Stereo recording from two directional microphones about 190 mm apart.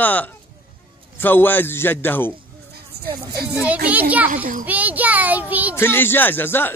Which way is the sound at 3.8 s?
10° right (ahead or behind).